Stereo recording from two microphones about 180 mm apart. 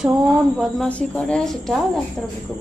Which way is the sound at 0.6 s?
5° left (ahead or behind).